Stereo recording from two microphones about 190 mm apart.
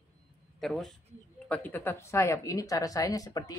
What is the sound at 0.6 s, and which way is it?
A woman's voice, centre (ahead or behind).